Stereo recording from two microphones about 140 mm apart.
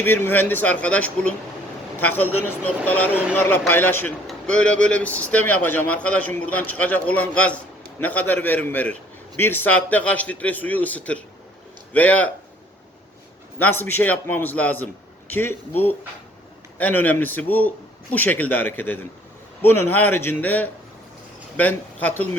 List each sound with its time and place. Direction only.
0.0 s speech: 15° left (ahead or behind)
3.1 s a man's voice: 10° right (ahead or behind)
3.7 s speech: 15° left (ahead or behind)
13.6 s speech: 15° left (ahead or behind)